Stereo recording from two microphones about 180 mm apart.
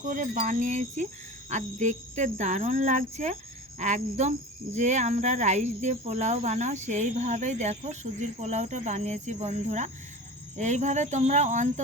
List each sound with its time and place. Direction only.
0.1 s wind chime: 50° right (ahead or behind)
1.5 s speech: 40° right (ahead or behind)